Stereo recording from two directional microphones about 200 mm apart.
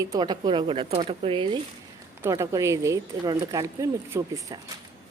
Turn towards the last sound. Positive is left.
turn(degrees=-15)  # may be behind; listen again after turning